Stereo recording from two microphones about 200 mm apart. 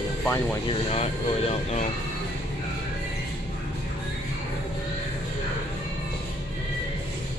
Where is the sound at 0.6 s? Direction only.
30° left (ahead or behind).